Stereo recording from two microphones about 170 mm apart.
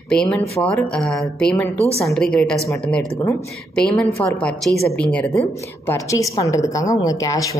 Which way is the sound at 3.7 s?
5° left (ahead or behind).